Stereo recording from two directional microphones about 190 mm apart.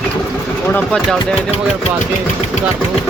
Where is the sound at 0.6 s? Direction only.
5° left (ahead or behind).